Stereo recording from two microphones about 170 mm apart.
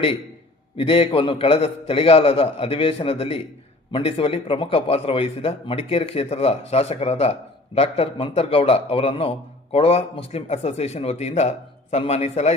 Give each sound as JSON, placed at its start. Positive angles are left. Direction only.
{"t": 0.8, "sound": "a man's voice", "side_deg": 35}